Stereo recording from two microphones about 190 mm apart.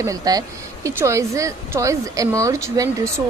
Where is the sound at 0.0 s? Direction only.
20° right (ahead or behind).